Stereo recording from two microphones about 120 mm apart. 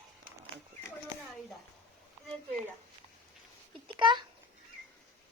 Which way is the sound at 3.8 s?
40° right (ahead or behind).